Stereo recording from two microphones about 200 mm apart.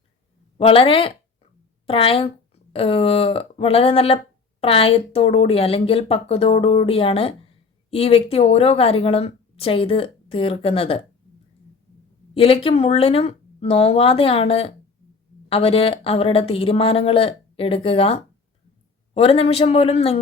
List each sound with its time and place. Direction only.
0.5 s a woman's voice: 30° left (ahead or behind)
12.3 s a woman's voice: 30° left (ahead or behind)